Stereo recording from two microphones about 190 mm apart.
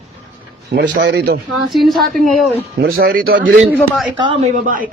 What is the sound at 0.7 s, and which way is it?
Speech, 65° right (ahead or behind).